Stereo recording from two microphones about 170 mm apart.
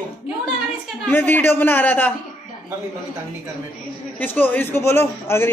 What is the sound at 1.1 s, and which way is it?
A man's voice, 10° left (ahead or behind).